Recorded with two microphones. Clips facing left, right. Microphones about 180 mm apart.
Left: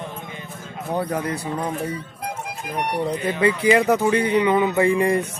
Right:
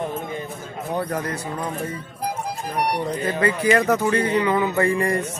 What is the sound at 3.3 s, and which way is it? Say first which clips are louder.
A man's voice: left 2 dB; 15° left (ahead or behind).